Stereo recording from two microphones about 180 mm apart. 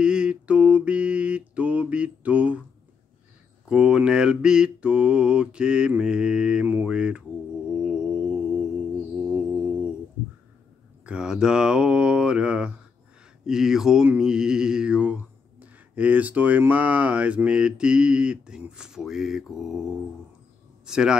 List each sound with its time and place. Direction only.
0.0 s mantra: 5° right (ahead or behind)
3.6 s mantra: 5° right (ahead or behind)
9.3 s music: 5° right (ahead or behind)
11.1 s mantra: 5° right (ahead or behind)
20.8 s a man's voice: 5° right (ahead or behind)